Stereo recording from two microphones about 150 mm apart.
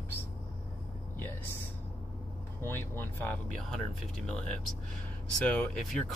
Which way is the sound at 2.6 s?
15° left (ahead or behind).